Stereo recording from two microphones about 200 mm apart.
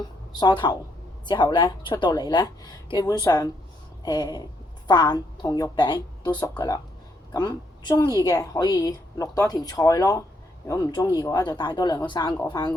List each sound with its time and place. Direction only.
0.0 s a woman's voice: 20° left (ahead or behind)